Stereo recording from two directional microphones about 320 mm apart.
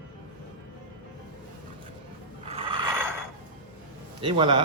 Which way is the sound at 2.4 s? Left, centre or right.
Centre.